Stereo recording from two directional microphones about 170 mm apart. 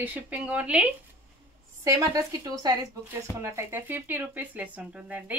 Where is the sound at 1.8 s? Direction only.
20° right (ahead or behind).